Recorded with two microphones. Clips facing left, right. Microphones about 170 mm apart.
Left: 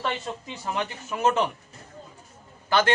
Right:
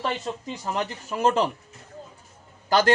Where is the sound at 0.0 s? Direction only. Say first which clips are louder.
Right 2 dB; 35° right (ahead or behind).